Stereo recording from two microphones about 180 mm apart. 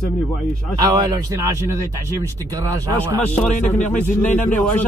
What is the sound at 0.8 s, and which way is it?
Speech, 20° right (ahead or behind).